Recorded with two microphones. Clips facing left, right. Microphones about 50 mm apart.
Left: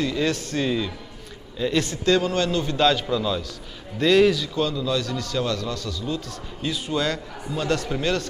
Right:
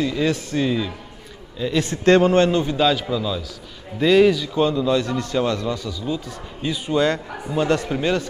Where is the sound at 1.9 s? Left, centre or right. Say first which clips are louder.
Right 10 dB; right.